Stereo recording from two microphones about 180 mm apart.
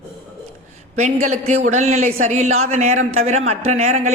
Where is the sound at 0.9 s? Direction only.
40° right (ahead or behind).